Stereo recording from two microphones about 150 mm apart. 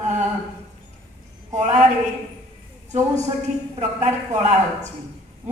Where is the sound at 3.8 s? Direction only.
50° right (ahead or behind).